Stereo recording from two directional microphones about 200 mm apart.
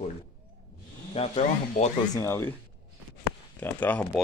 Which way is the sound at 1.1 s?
35° left (ahead or behind).